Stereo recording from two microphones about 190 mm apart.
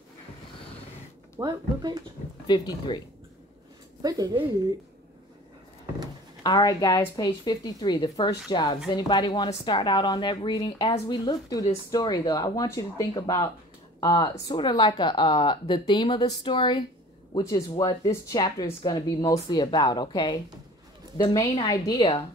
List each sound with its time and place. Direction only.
1.4 s speech: 20° right (ahead or behind)
2.4 s speech: 20° left (ahead or behind)
4.0 s speech: 20° right (ahead or behind)
6.4 s speech: 20° left (ahead or behind)